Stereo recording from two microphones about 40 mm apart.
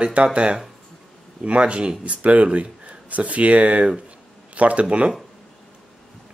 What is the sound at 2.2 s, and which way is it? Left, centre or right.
Speech, right.